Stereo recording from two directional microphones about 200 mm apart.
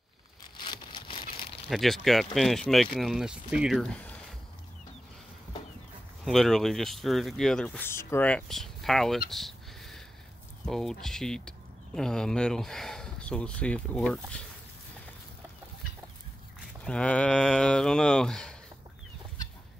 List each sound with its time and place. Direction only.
0.6 s a sound: 25° left (ahead or behind)
1.7 s speech: centre (ahead or behind)
6.2 s speech: centre (ahead or behind)
9.3 s a sound: centre (ahead or behind)
10.6 s speech: centre (ahead or behind)
16.8 s speech: 5° left (ahead or behind)